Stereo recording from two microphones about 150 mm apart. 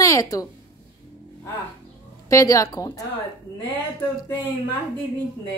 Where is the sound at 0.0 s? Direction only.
20° left (ahead or behind).